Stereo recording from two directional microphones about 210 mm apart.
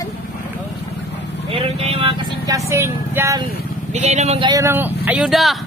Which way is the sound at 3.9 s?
30° right (ahead or behind).